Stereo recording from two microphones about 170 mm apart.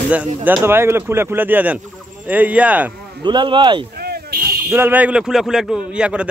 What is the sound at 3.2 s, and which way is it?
Speech, 25° right (ahead or behind).